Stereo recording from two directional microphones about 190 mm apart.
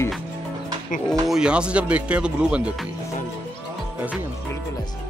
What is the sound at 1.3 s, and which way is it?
Speech, 5° right (ahead or behind).